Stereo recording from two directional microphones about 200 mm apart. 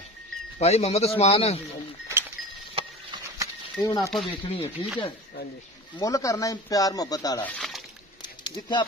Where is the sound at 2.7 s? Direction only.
20° right (ahead or behind).